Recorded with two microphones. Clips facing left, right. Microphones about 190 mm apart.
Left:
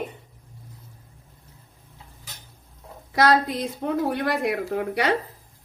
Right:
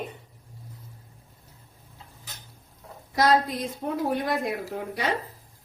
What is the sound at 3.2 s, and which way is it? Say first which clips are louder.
Speech: left 2 dB; 70° left (ahead or behind).